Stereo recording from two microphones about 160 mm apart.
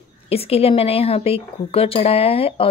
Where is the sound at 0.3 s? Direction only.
40° left (ahead or behind).